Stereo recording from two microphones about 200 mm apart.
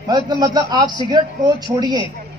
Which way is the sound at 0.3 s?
20° right (ahead or behind).